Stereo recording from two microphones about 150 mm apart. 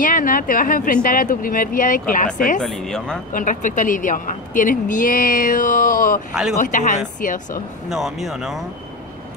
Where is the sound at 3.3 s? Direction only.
60° left (ahead or behind).